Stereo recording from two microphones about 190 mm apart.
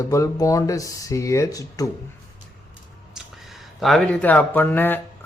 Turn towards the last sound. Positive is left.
turn(degrees=10)  # may be behind; listen again after turning